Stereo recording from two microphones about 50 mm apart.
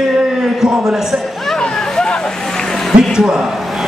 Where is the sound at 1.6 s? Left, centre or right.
Centre.